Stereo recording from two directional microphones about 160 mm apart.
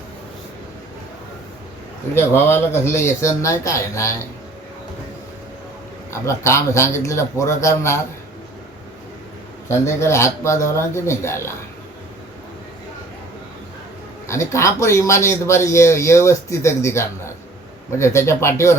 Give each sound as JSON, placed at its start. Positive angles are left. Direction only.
{"t": 2.1, "sound": "speech", "side_deg": 15}
{"t": 6.1, "sound": "a man's voice", "side_deg": 15}
{"t": 9.6, "sound": "a man's voice", "side_deg": 15}
{"t": 14.3, "sound": "a man's voice", "side_deg": 15}